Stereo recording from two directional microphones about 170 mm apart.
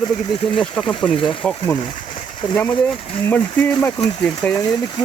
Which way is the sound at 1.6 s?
25° left (ahead or behind).